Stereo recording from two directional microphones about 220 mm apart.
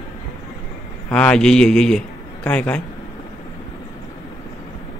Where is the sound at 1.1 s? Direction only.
5° left (ahead or behind).